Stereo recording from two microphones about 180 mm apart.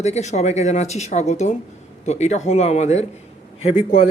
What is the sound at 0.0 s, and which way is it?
A man's voice, 40° left (ahead or behind).